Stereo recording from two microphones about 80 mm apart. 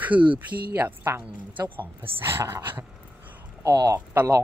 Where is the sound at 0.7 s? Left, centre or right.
Right.